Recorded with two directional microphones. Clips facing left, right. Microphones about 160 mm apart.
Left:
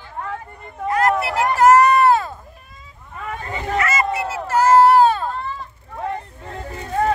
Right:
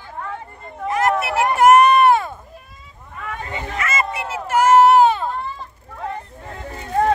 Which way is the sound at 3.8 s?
25° right (ahead or behind).